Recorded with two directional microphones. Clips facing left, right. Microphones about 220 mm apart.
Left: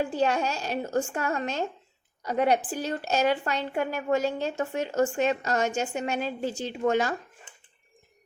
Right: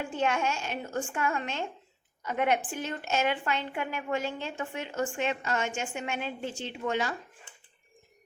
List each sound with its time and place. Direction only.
0.0 s a woman's voice: 35° left (ahead or behind)